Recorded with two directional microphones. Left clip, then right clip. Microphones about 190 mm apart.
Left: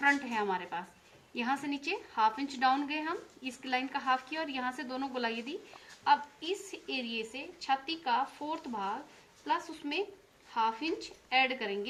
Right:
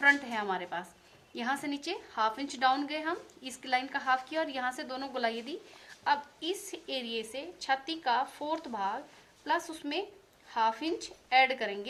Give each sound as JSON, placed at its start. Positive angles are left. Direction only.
{"t": 0.0, "sound": "a woman's voice", "side_deg": -45}
{"t": 10.5, "sound": "a woman's voice", "side_deg": -55}